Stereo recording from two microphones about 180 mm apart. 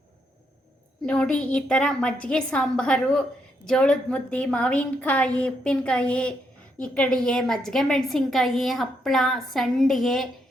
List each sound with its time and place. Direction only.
1.0 s a woman's voice: 5° left (ahead or behind)